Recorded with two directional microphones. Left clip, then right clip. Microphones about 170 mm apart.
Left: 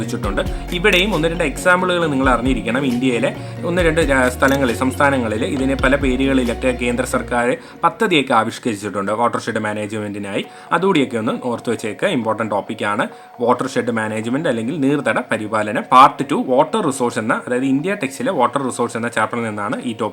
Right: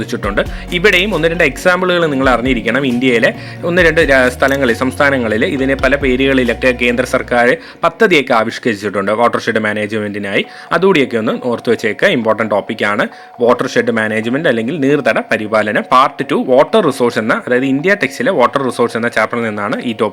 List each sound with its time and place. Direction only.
0.1 s speech: 15° right (ahead or behind)